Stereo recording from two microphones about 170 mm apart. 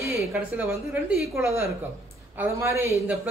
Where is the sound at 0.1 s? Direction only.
5° right (ahead or behind).